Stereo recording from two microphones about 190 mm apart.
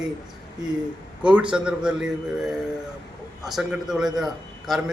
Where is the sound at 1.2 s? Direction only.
5° right (ahead or behind).